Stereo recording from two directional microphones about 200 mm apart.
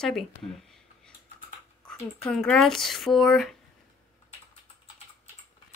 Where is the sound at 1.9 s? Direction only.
5° left (ahead or behind).